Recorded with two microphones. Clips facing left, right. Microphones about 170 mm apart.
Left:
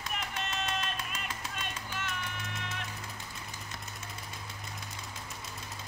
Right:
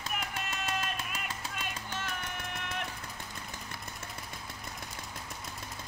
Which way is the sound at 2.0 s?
55° right (ahead or behind).